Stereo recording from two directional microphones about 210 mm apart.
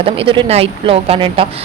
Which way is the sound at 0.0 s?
25° right (ahead or behind).